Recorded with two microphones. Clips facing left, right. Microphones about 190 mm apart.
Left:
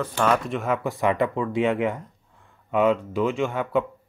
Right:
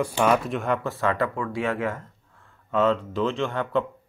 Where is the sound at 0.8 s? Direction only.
15° left (ahead or behind).